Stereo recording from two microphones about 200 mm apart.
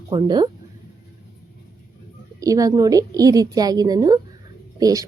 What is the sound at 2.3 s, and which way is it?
A woman's voice, 15° right (ahead or behind).